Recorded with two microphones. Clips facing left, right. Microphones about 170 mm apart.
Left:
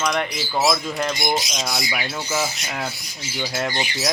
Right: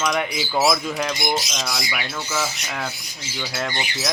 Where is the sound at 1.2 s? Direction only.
20° left (ahead or behind).